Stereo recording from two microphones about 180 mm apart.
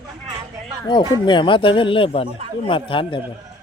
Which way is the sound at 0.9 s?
25° left (ahead or behind).